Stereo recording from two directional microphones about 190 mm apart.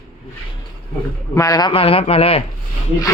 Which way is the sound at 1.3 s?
20° left (ahead or behind).